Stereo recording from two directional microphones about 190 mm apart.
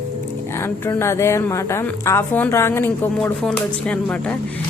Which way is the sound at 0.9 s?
15° left (ahead or behind).